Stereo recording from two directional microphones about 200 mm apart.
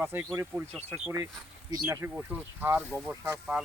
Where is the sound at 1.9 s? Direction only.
10° right (ahead or behind).